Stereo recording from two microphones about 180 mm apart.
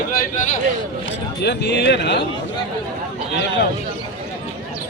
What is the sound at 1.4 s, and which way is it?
Speech, 70° left (ahead or behind).